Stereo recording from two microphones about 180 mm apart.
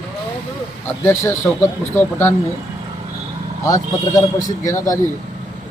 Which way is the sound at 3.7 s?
20° left (ahead or behind).